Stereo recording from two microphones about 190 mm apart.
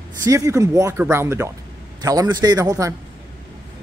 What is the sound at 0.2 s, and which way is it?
Speech, 15° right (ahead or behind).